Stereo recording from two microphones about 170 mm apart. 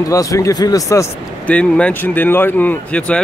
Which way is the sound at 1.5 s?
5° left (ahead or behind).